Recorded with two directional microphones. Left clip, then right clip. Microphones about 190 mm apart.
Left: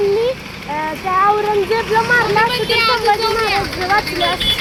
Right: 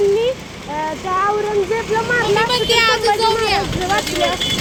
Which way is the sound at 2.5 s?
65° right (ahead or behind).